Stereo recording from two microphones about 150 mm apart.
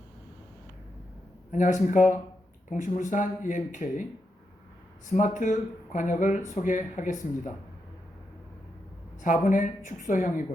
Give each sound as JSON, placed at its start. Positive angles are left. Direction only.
{"t": 1.5, "sound": "speech", "side_deg": 55}
{"t": 5.0, "sound": "speech", "side_deg": 55}
{"t": 9.2, "sound": "speech", "side_deg": 60}